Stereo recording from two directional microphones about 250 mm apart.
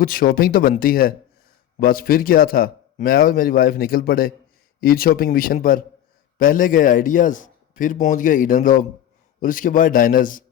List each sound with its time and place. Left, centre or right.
0.0 s a man's voice: left